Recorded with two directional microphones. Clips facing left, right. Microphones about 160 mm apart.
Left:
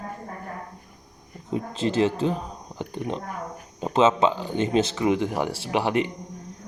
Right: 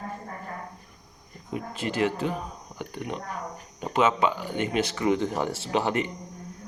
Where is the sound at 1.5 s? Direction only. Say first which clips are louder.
Left 5 dB; 25° left (ahead or behind).